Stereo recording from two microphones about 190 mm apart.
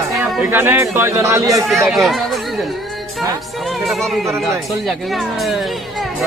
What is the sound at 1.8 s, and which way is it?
Speech, centre (ahead or behind).